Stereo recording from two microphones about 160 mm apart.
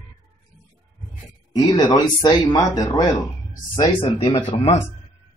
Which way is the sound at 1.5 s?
25° left (ahead or behind).